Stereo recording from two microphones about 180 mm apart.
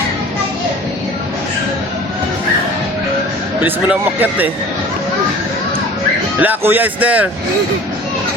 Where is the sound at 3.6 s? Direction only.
10° right (ahead or behind).